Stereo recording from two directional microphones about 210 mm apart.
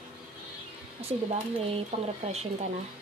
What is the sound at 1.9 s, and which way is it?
Speech, 25° right (ahead or behind).